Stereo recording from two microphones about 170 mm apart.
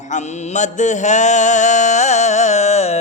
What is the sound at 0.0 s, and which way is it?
Mantra, 45° left (ahead or behind).